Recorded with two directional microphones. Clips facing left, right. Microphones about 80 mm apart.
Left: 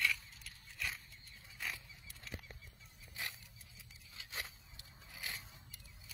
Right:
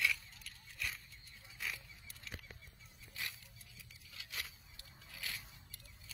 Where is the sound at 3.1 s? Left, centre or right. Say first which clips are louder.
Left 1 dB; left.